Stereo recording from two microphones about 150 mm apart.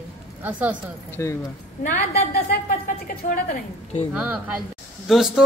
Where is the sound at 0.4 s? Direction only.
10° right (ahead or behind).